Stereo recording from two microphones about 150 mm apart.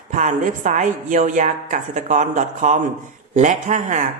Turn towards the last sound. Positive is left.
turn(degrees=-55)  # may be behind; listen again after turning